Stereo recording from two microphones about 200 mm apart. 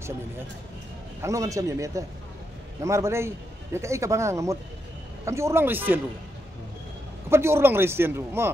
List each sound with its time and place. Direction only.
1.2 s speech: 15° right (ahead or behind)
7.2 s speech: 10° right (ahead or behind)